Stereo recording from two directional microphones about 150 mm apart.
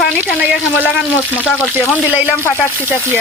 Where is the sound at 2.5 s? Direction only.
15° left (ahead or behind).